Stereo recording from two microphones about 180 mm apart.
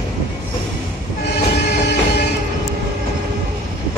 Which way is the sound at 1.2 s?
65° left (ahead or behind).